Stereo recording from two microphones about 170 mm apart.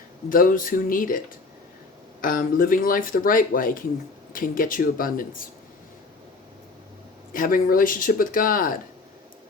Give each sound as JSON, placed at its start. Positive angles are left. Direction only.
{"t": 0.3, "sound": "speech", "side_deg": 55}
{"t": 2.2, "sound": "speech", "side_deg": 55}
{"t": 7.3, "sound": "speech", "side_deg": 55}